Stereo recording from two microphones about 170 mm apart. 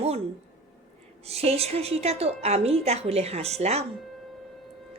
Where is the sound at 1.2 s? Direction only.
35° right (ahead or behind).